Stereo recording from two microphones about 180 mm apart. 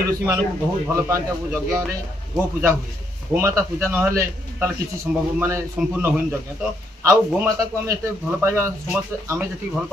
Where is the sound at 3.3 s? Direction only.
15° right (ahead or behind).